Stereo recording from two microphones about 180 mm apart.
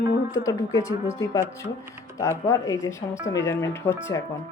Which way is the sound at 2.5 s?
20° left (ahead or behind).